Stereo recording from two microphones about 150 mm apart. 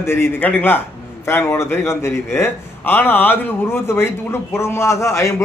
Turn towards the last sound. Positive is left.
turn(degrees=20)  # may be behind; listen again after turning